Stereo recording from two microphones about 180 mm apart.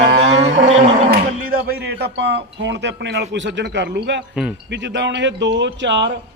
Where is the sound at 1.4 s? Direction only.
60° right (ahead or behind).